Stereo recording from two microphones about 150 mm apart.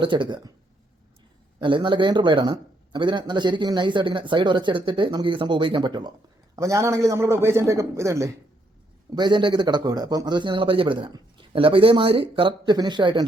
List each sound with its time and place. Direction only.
0.0 s speech: 30° right (ahead or behind)
1.6 s a man's voice: 35° right (ahead or behind)
9.0 s speech: 30° right (ahead or behind)